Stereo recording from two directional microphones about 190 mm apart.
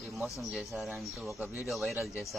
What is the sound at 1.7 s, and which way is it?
Speech, centre (ahead or behind).